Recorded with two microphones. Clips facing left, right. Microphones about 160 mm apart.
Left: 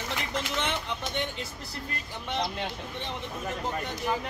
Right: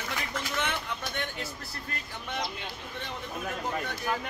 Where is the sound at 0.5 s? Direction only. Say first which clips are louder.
Left 1 dB; 20° left (ahead or behind).